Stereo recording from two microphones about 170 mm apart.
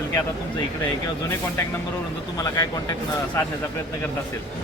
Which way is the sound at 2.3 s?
20° left (ahead or behind).